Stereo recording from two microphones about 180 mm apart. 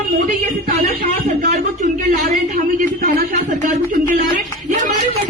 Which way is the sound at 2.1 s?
45° right (ahead or behind).